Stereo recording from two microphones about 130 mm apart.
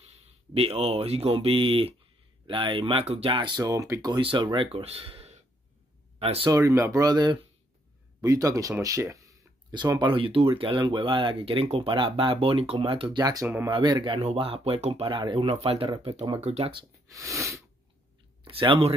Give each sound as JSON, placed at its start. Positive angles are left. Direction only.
{"t": 0.0, "sound": "speech", "side_deg": -50}
{"t": 3.6, "sound": "speech", "side_deg": -25}
{"t": 4.2, "sound": "speech", "side_deg": -40}
{"t": 6.5, "sound": "speech", "side_deg": -25}
{"t": 13.2, "sound": "speech", "side_deg": -30}
{"t": 15.1, "sound": "speech", "side_deg": -40}
{"t": 17.1, "sound": "speech", "side_deg": -25}
{"t": 18.4, "sound": "speech", "side_deg": -40}